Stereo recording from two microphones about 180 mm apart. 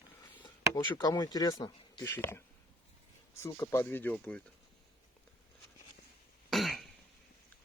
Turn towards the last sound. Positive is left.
turn(degrees=0)  # may be behind; listen again after turning